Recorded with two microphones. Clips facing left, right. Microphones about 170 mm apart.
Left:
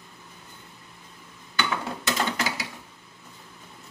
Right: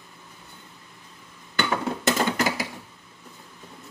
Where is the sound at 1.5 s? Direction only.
45° right (ahead or behind).